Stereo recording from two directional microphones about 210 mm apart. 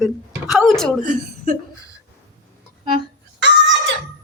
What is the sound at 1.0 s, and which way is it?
Speech, 40° right (ahead or behind).